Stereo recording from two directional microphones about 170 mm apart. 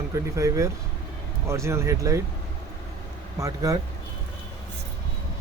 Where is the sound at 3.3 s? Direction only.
20° right (ahead or behind).